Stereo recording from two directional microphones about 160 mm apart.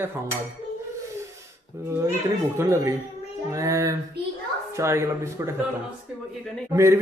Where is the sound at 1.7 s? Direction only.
15° right (ahead or behind).